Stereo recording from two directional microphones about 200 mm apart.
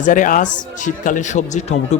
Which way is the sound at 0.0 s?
40° left (ahead or behind).